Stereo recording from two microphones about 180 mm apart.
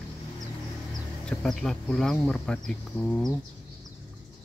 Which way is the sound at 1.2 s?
5° left (ahead or behind).